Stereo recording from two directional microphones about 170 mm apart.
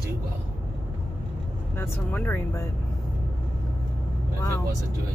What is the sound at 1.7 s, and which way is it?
Speech, 15° left (ahead or behind).